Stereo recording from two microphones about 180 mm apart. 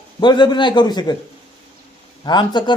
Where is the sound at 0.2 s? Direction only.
25° left (ahead or behind).